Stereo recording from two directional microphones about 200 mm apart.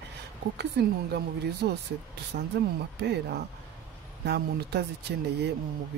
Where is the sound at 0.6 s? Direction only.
55° right (ahead or behind).